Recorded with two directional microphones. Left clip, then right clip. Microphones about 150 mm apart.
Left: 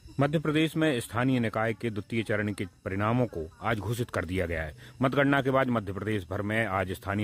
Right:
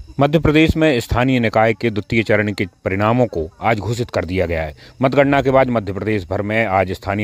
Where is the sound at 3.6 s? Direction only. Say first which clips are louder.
Right 12 dB; 35° right (ahead or behind).